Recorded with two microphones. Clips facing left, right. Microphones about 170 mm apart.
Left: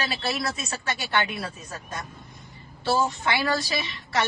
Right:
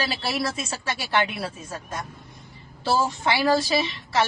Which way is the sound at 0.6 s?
30° right (ahead or behind).